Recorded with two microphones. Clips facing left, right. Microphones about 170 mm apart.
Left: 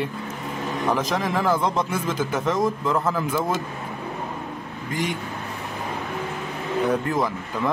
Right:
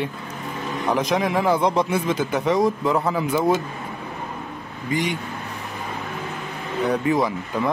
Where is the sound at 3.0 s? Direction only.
15° right (ahead or behind).